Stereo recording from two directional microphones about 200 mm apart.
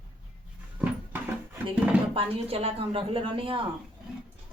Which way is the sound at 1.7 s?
5° right (ahead or behind).